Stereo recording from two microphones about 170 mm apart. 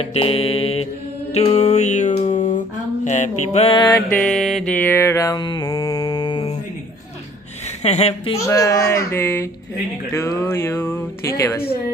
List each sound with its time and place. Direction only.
0.0 s mantra: 35° left (ahead or behind)
1.3 s a sound: 35° left (ahead or behind)
4.1 s mantra: 5° left (ahead or behind); by 6.6 s 30° left (ahead or behind)
7.8 s a woman's voice: 40° left (ahead or behind)
8.4 s speech: 20° left (ahead or behind)